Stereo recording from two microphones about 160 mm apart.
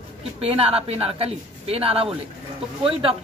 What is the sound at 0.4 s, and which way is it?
Speech, 40° right (ahead or behind).